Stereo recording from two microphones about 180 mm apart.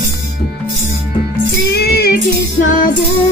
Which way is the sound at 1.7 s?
60° left (ahead or behind).